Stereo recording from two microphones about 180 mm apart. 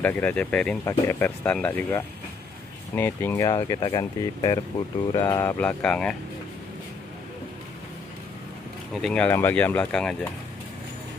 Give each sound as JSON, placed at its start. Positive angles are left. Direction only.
{"t": 0.0, "sound": "speech", "side_deg": 10}
{"t": 8.9, "sound": "speech", "side_deg": 5}